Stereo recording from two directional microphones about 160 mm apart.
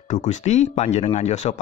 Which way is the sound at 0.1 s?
50° left (ahead or behind).